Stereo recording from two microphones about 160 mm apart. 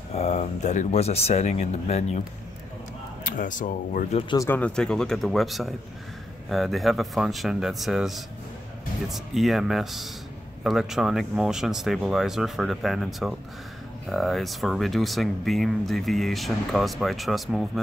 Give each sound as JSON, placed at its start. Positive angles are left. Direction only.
{"t": 0.1, "sound": "speech", "side_deg": 45}
{"t": 3.3, "sound": "speech", "side_deg": 55}
{"t": 4.4, "sound": "speech", "side_deg": 10}